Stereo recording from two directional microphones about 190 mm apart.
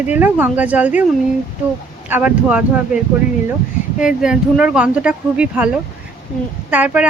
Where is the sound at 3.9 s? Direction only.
5° right (ahead or behind).